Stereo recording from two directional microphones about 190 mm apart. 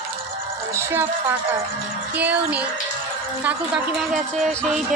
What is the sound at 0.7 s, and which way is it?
A woman's voice, 10° right (ahead or behind).